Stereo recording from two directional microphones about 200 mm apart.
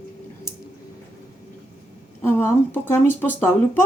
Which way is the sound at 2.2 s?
10° left (ahead or behind).